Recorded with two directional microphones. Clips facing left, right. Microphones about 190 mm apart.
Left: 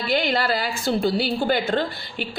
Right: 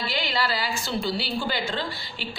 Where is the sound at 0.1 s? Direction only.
50° left (ahead or behind).